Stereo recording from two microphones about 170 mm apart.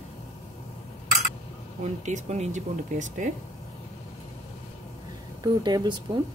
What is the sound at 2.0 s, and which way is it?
Speech, 45° right (ahead or behind).